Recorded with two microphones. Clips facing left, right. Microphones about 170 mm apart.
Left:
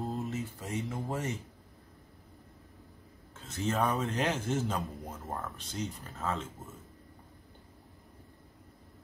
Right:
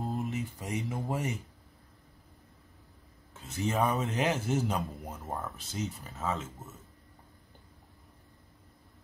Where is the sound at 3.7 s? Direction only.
5° right (ahead or behind).